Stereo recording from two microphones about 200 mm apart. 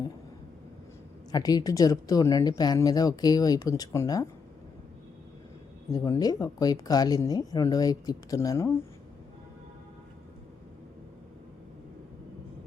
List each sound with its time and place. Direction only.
1.3 s speech: 20° left (ahead or behind)
5.9 s speech: 15° left (ahead or behind)